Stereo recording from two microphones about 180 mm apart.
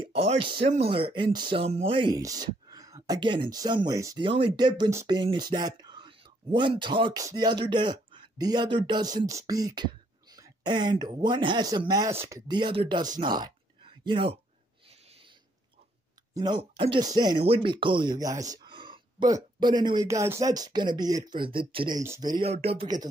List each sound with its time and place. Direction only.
0.0 s speech: 35° right (ahead or behind)
16.3 s speech: 25° right (ahead or behind)
22.5 s speech: 35° right (ahead or behind)